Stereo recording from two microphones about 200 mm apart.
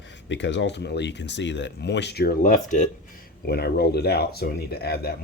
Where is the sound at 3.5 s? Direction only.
55° left (ahead or behind).